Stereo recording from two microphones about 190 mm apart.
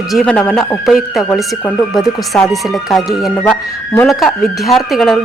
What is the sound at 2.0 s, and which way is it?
A woman's voice, centre (ahead or behind).